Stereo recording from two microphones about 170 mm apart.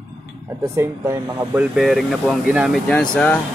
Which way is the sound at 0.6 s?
15° right (ahead or behind).